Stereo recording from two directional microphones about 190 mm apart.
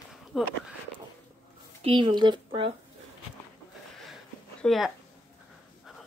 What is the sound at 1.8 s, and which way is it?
Speech, 25° right (ahead or behind).